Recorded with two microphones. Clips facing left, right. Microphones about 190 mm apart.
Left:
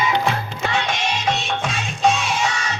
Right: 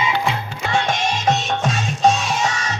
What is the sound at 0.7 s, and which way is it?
Music, 45° right (ahead or behind).